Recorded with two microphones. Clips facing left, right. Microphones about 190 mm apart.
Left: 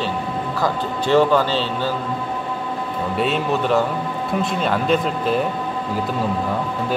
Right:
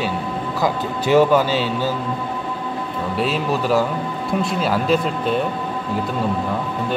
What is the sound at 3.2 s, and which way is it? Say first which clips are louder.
Speech: even; centre (ahead or behind).